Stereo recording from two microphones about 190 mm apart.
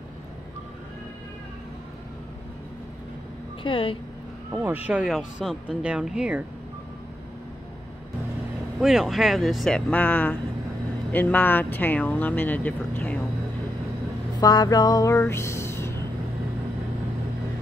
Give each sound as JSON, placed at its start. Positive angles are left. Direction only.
{"t": 3.6, "sound": "speech", "side_deg": 25}
{"t": 4.5, "sound": "speech", "side_deg": -10}
{"t": 8.7, "sound": "speech", "side_deg": 0}
{"t": 14.4, "sound": "speech", "side_deg": 20}